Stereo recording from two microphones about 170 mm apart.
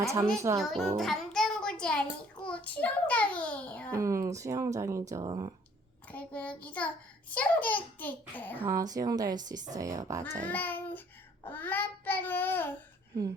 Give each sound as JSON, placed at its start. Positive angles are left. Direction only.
{"t": 0.0, "sound": "speech", "side_deg": -20}
{"t": 0.6, "sound": "a child's voice", "side_deg": 0}
{"t": 3.9, "sound": "a woman's voice", "side_deg": -15}
{"t": 6.1, "sound": "a child's voice", "side_deg": 10}
{"t": 8.6, "sound": "a woman's voice", "side_deg": -20}
{"t": 10.5, "sound": "a child's voice", "side_deg": 10}